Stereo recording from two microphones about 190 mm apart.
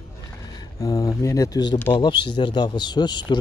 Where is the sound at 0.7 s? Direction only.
20° left (ahead or behind).